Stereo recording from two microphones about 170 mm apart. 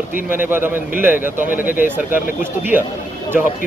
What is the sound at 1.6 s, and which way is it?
Speech, 55° left (ahead or behind).